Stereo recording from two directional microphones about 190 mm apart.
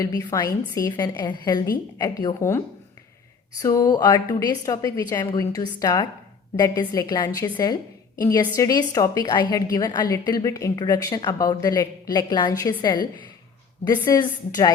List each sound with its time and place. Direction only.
0.0 s a woman's voice: 20° left (ahead or behind)